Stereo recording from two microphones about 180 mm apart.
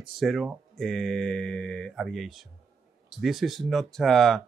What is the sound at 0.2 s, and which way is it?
Speech, centre (ahead or behind).